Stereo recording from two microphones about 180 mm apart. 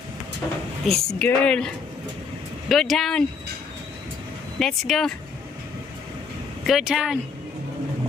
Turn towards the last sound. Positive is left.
turn(degrees=-5)  # may be behind; listen again after turning